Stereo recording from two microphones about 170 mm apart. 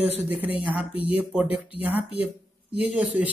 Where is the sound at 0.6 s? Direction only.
10° right (ahead or behind).